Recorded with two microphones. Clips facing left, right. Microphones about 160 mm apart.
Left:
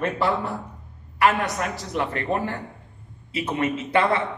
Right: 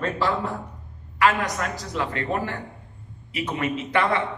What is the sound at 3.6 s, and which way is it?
Speech, 25° left (ahead or behind).